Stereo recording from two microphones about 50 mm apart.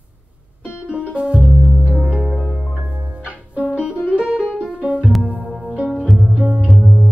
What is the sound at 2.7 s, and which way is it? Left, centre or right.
Music, right.